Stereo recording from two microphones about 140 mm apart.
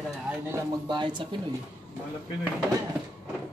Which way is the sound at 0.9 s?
35° right (ahead or behind).